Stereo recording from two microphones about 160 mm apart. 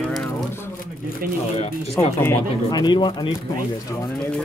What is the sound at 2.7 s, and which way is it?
Speech, 25° left (ahead or behind).